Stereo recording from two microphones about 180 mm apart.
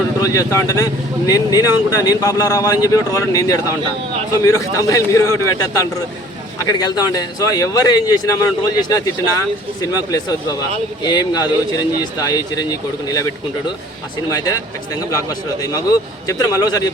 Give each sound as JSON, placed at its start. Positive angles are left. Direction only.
{"t": 0.2, "sound": "a man's voice", "side_deg": 20}